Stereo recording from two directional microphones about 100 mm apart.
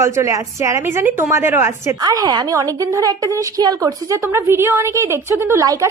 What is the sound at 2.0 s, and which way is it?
A woman's voice, 40° right (ahead or behind).